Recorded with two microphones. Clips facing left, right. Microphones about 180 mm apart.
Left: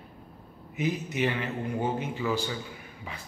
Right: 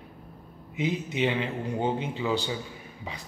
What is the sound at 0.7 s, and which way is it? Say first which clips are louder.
Speech: right 1 dB; 20° right (ahead or behind).